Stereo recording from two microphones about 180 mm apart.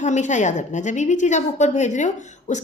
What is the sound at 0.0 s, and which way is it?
A woman's voice, 40° left (ahead or behind).